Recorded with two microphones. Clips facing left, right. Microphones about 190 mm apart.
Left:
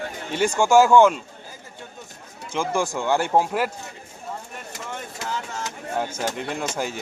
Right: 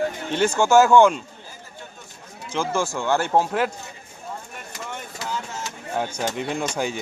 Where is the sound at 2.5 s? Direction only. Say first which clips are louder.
Even; 15° left (ahead or behind).